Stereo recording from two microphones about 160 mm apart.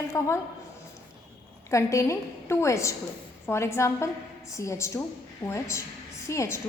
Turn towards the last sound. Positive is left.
turn(degrees=20)  # may be behind; listen again after turning